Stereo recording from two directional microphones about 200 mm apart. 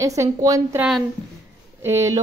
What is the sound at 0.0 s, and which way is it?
Speech, 15° right (ahead or behind).